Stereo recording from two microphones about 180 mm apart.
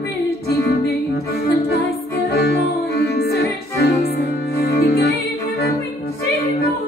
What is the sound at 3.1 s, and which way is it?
Music, 60° left (ahead or behind).